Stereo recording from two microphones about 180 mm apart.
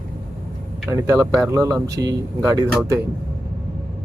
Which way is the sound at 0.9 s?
20° right (ahead or behind).